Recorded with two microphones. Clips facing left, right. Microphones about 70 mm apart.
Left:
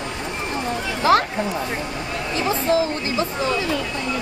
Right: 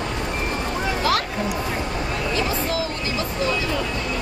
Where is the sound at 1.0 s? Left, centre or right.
Left.